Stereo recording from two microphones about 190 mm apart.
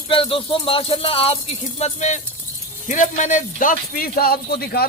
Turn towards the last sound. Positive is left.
turn(degrees=55)  # may be behind; listen again after turning